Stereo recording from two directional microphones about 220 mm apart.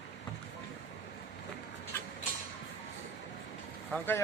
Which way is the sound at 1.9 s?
10° left (ahead or behind).